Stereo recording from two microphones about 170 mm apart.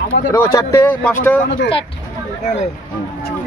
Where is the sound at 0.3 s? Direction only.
20° left (ahead or behind).